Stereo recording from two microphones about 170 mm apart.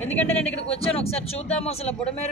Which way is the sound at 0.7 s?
35° left (ahead or behind).